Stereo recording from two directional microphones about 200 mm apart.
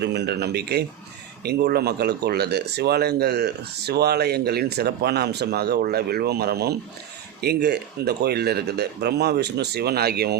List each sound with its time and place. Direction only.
0.0 s a man's voice: 55° right (ahead or behind)